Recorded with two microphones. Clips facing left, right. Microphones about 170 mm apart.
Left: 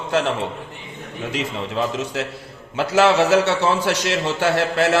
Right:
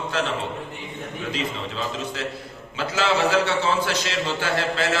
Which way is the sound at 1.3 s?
65° left (ahead or behind).